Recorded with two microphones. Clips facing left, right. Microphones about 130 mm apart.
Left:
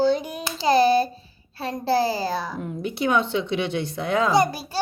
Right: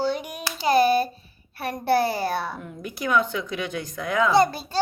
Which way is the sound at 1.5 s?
25° left (ahead or behind).